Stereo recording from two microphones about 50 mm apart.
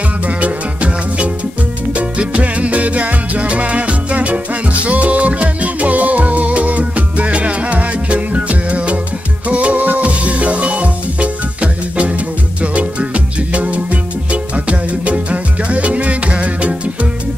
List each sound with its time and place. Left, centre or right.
0.4 s music: right